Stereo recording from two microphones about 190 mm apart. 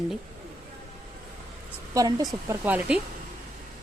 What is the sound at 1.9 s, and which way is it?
Speech, 20° right (ahead or behind).